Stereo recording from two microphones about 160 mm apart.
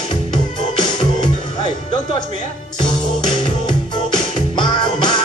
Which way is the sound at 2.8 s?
30° left (ahead or behind).